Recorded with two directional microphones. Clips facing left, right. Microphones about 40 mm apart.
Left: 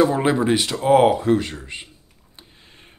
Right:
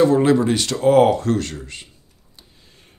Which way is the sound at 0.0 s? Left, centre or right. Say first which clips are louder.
Right 3 dB; centre.